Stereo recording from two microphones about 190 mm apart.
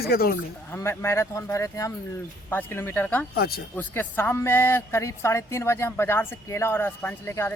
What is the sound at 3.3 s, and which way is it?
Speech, 55° left (ahead or behind).